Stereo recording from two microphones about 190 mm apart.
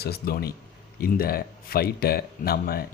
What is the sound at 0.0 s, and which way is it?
Speech, 55° left (ahead or behind).